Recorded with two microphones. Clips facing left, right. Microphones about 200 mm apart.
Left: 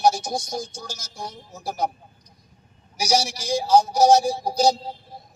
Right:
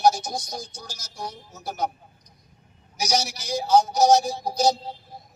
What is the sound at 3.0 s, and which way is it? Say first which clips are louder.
Speech: left 3 dB; 30° left (ahead or behind).